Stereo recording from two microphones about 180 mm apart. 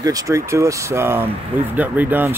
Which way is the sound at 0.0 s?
20° right (ahead or behind).